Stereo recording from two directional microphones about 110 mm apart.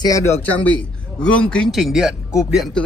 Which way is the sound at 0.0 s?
30° left (ahead or behind).